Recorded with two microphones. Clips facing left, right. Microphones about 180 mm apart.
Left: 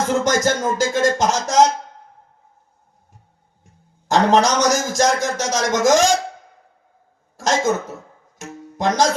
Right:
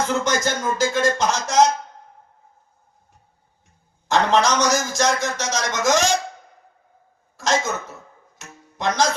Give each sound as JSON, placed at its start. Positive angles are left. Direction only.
{"t": 0.1, "sound": "a man's voice", "side_deg": 45}
{"t": 4.1, "sound": "a man's voice", "side_deg": 45}
{"t": 7.3, "sound": "a man's voice", "side_deg": 45}
{"t": 8.4, "sound": "music", "side_deg": 45}